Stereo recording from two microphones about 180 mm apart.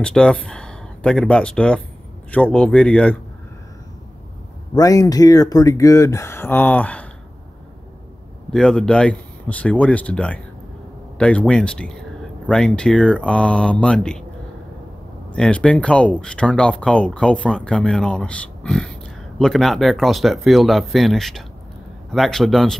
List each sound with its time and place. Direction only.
0.0 s speech: 5° left (ahead or behind)
4.7 s speech: 20° left (ahead or behind)
8.5 s speech: 5° left (ahead or behind)
15.3 s speech: 5° left (ahead or behind)